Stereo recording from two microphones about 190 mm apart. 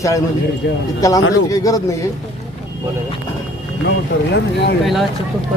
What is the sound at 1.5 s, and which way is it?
Speech, 15° left (ahead or behind).